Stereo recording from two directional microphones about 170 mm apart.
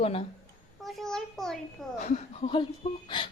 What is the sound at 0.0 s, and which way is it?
Speech, 35° left (ahead or behind).